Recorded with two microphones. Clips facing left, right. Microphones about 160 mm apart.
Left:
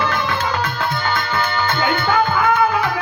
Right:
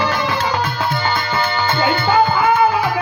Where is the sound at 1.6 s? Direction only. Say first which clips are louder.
Right 3 dB; 25° right (ahead or behind).